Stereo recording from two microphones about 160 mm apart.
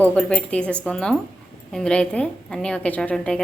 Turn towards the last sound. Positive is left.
turn(degrees=5)  # may be behind; listen again after turning